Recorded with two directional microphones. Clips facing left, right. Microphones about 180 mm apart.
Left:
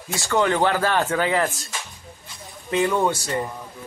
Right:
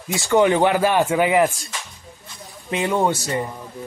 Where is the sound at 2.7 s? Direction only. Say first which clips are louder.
Even; 20° right (ahead or behind).